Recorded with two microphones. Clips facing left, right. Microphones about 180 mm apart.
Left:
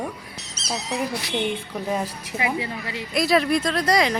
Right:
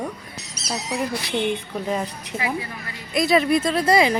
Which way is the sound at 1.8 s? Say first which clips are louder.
Even; 5° left (ahead or behind).